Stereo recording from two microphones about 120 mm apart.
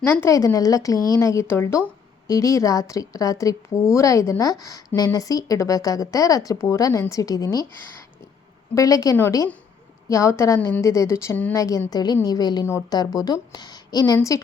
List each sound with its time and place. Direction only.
0.0 s a woman's voice: 20° left (ahead or behind)
8.7 s a woman's voice: 30° left (ahead or behind)